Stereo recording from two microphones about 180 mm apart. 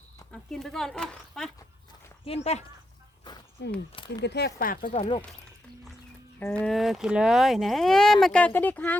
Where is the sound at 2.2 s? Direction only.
35° left (ahead or behind).